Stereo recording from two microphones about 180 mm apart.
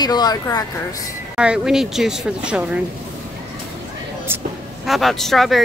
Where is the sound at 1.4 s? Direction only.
5° right (ahead or behind).